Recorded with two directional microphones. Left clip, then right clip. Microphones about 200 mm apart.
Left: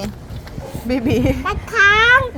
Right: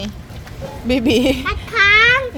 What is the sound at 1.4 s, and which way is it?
Children playing, 40° right (ahead or behind).